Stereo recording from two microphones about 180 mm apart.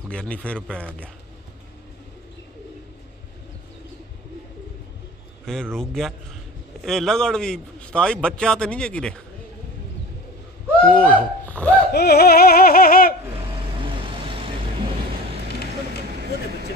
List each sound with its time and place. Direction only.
0.1 s a man's voice: 5° left (ahead or behind)
5.4 s a man's voice: 5° left (ahead or behind)
10.9 s a sound: 5° left (ahead or behind)
11.9 s music: 60° left (ahead or behind)